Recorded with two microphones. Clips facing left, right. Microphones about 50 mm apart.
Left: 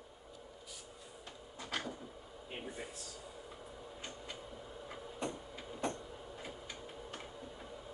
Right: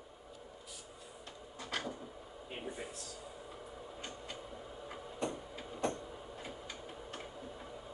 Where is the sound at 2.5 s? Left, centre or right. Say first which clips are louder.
Right 1 dB; centre.